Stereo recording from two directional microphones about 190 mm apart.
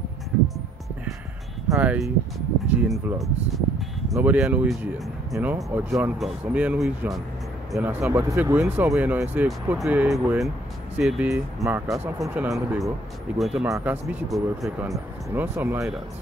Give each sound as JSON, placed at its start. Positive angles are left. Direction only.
{"t": 1.7, "sound": "speech", "side_deg": -10}
{"t": 13.7, "sound": "speech", "side_deg": -15}
{"t": 14.0, "sound": "speech", "side_deg": 0}